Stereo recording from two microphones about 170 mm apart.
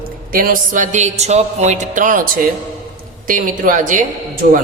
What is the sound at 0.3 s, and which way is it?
A woman's voice, 55° right (ahead or behind).